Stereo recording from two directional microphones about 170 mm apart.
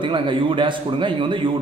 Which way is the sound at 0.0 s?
30° right (ahead or behind).